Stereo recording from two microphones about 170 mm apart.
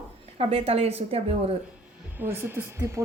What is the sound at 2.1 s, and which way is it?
Speech, 15° right (ahead or behind).